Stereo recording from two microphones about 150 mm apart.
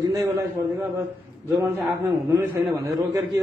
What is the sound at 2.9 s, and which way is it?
Speech, 20° right (ahead or behind).